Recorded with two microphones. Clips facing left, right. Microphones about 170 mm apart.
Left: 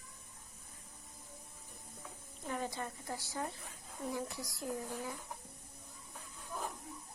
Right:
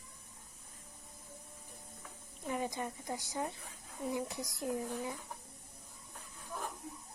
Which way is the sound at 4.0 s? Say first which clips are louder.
Right 3 dB; 15° right (ahead or behind).